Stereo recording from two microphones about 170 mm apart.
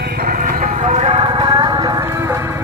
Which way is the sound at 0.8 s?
40° right (ahead or behind).